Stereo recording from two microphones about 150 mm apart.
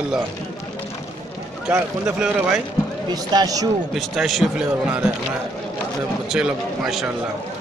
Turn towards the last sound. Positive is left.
turn(degrees=-5)  # may be behind; listen again after turning